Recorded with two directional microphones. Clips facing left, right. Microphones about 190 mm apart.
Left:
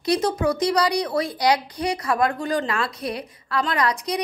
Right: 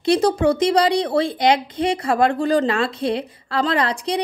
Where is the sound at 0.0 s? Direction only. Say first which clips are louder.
Right 5 dB; 30° right (ahead or behind).